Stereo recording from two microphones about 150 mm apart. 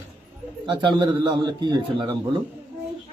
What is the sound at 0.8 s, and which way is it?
Speech, 30° right (ahead or behind).